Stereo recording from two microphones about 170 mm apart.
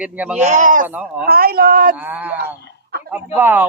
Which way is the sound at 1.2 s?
60° right (ahead or behind).